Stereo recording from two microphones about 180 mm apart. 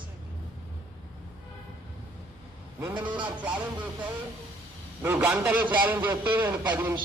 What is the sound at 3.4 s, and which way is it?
Speech, 10° right (ahead or behind).